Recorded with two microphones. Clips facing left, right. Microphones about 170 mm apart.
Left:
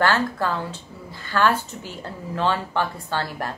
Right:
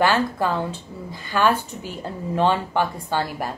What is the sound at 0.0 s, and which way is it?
Speech, 15° right (ahead or behind).